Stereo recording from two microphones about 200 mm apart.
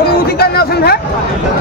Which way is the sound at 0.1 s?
50° left (ahead or behind).